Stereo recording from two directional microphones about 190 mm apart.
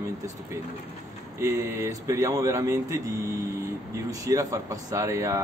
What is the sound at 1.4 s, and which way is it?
Speech, 15° right (ahead or behind).